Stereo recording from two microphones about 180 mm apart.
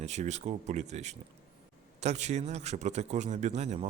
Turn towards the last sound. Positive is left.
turn(degrees=-40)  # may be behind; listen again after turning